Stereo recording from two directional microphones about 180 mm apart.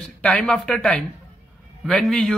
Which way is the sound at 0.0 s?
5° left (ahead or behind).